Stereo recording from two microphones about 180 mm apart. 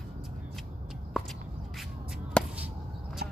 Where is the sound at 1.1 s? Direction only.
Centre (ahead or behind).